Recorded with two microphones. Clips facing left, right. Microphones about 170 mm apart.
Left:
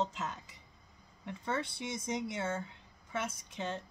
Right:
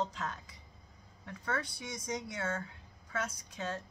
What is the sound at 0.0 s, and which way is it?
Speech, 25° left (ahead or behind).